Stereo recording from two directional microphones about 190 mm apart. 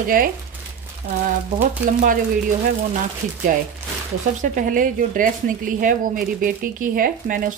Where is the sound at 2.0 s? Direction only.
45° right (ahead or behind).